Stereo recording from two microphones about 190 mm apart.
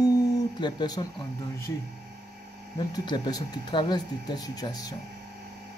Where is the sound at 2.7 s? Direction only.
25° left (ahead or behind).